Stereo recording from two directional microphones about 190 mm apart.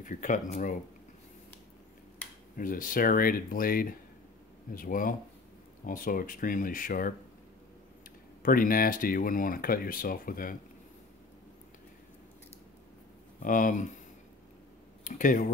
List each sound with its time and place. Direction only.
0.0 s speech: 45° left (ahead or behind)
2.5 s speech: 45° left (ahead or behind)
8.4 s speech: 50° left (ahead or behind)
13.4 s speech: 45° left (ahead or behind)
15.0 s speech: 45° left (ahead or behind)